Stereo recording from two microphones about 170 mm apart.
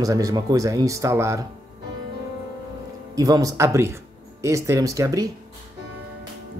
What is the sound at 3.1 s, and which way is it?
Speech, 20° right (ahead or behind).